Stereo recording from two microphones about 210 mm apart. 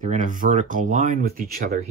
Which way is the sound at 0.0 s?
35° right (ahead or behind).